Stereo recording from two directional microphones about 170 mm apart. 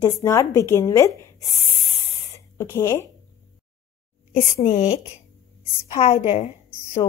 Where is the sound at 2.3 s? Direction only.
20° left (ahead or behind).